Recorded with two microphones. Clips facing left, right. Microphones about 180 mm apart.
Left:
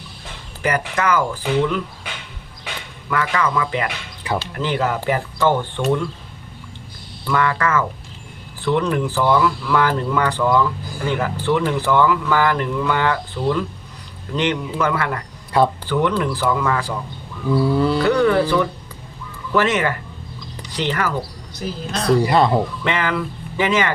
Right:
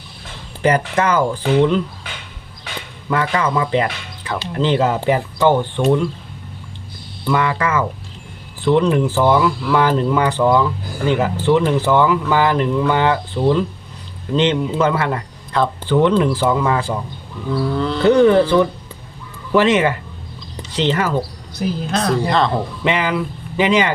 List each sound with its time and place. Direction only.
0.6 s speech: 30° right (ahead or behind)
3.1 s speech: 25° right (ahead or behind)
7.3 s speech: 20° right (ahead or behind)
15.5 s speech: 10° left (ahead or behind)
15.9 s speech: 25° right (ahead or behind)
17.5 s speech: 10° left (ahead or behind)
18.0 s speech: 25° right (ahead or behind)
22.0 s speech: 10° left (ahead or behind)
22.8 s speech: 15° right (ahead or behind)